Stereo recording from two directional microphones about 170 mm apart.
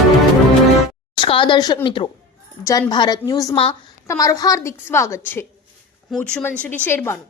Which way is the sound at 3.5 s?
35° left (ahead or behind).